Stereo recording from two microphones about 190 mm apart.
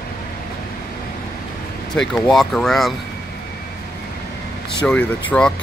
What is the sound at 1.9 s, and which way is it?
Speech, 5° left (ahead or behind).